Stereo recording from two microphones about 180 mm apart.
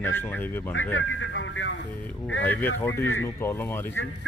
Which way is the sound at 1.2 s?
90° left.